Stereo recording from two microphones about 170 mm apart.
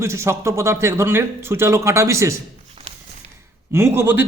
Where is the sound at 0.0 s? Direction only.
15° right (ahead or behind).